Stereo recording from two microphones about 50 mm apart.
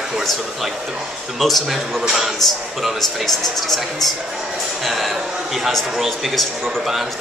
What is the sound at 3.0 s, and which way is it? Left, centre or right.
Speech, centre.